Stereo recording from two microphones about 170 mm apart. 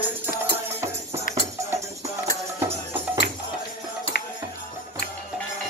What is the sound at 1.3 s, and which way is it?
Music, 20° right (ahead or behind).